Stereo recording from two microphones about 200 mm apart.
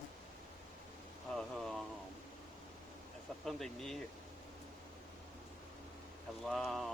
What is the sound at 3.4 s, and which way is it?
Speech, centre (ahead or behind).